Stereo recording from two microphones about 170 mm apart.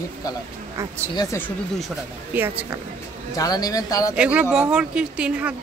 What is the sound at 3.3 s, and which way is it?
Speech, 20° left (ahead or behind).